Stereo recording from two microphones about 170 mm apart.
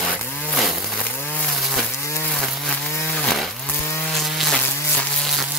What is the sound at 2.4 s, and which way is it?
Chainsaw, centre (ahead or behind).